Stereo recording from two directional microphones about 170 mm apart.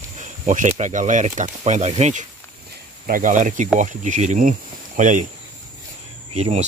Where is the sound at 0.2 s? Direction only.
50° right (ahead or behind).